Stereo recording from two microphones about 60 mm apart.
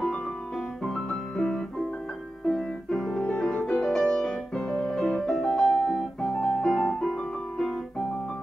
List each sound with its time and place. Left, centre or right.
0.8 s piano: centre
2.4 s music: centre
3.2 s music: centre
3.5 s music: centre